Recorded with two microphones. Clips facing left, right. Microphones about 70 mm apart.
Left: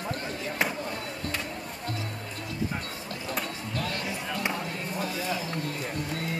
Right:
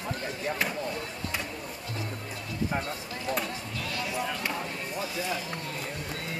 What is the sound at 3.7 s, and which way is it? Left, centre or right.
Music, left.